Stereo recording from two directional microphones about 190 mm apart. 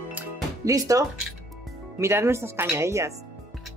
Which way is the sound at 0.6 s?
15° right (ahead or behind).